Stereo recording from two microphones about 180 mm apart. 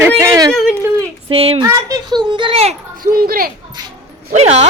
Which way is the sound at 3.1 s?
55° right (ahead or behind).